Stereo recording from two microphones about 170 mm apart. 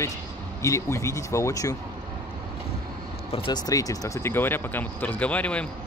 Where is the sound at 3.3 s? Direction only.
30° left (ahead or behind).